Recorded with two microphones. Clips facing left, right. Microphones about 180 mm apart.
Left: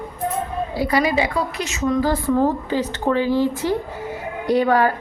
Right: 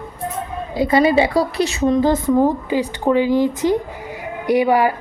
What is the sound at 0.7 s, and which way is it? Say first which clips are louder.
A woman's voice: right 6 dB; 20° right (ahead or behind).